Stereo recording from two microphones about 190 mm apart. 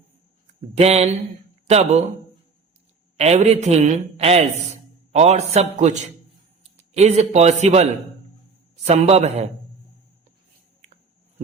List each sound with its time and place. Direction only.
0.8 s a man's voice: 35° right (ahead or behind)
3.2 s a man's voice: 35° right (ahead or behind)